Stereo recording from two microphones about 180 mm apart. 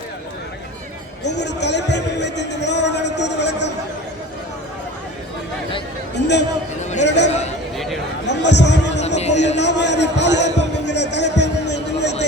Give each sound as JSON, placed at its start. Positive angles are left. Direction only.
{"t": 1.2, "sound": "a man's voice", "side_deg": 70}
{"t": 6.1, "sound": "a man's voice", "side_deg": 75}
{"t": 8.3, "sound": "a man's voice", "side_deg": 75}
{"t": 9.0, "sound": "music", "side_deg": 40}
{"t": 9.6, "sound": "a sound", "side_deg": 75}